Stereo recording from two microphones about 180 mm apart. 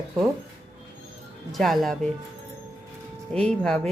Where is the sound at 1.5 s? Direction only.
Centre (ahead or behind).